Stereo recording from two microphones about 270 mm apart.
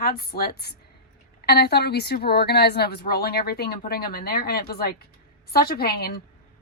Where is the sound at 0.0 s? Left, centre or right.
Left.